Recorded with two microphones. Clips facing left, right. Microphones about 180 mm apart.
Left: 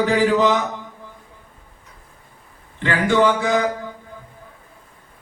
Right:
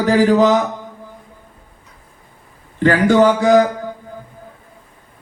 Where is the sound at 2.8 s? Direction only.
40° right (ahead or behind).